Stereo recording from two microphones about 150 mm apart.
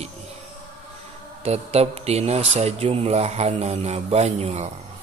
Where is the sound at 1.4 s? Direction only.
45° right (ahead or behind).